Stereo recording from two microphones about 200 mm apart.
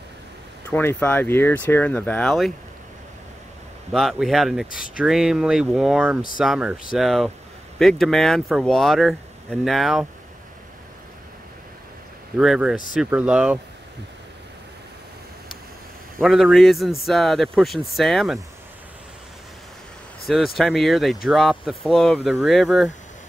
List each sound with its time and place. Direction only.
0.7 s speech: 10° left (ahead or behind)
3.9 s speech: centre (ahead or behind)
4.6 s speech: 45° left (ahead or behind)
4.9 s speech: 5° right (ahead or behind)
12.4 s speech: 5° right (ahead or behind)
16.2 s speech: centre (ahead or behind)
20.2 s speech: centre (ahead or behind)